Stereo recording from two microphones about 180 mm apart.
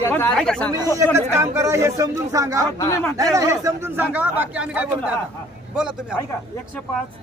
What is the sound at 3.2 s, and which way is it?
A man's voice, 20° right (ahead or behind).